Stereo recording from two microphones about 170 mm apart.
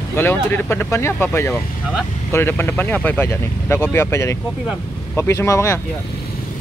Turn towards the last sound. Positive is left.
turn(degrees=15)  # may be behind; listen again after turning